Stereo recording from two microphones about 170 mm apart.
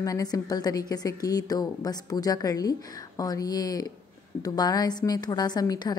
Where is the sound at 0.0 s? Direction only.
20° left (ahead or behind).